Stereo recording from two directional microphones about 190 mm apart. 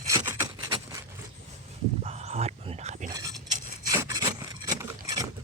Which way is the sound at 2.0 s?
35° right (ahead or behind).